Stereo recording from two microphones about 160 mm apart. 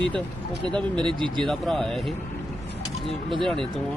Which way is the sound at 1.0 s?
30° right (ahead or behind).